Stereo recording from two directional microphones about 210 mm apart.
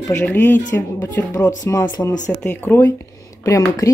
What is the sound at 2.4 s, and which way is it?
Speech, 10° left (ahead or behind).